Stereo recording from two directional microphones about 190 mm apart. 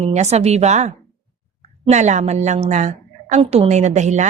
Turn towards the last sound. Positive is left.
turn(degrees=-40)  # may be behind; listen again after turning